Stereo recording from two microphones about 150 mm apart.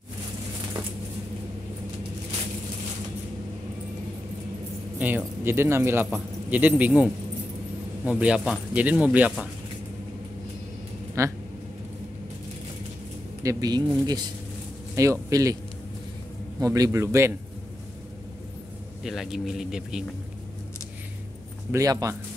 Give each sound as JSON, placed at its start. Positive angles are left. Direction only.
{"t": 4.9, "sound": "speech", "side_deg": -10}
{"t": 11.2, "sound": "speech", "side_deg": -20}
{"t": 13.4, "sound": "speech", "side_deg": -25}
{"t": 16.5, "sound": "speech", "side_deg": -25}
{"t": 19.0, "sound": "speech", "side_deg": 0}
{"t": 21.7, "sound": "speech", "side_deg": -20}